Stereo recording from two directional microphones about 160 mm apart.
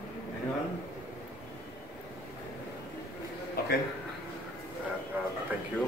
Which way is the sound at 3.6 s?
80° left.